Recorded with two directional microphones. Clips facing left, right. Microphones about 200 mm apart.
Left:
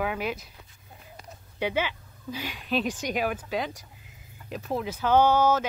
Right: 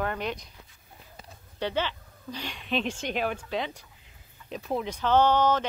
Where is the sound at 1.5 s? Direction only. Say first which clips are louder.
Left 1 dB; 10° left (ahead or behind).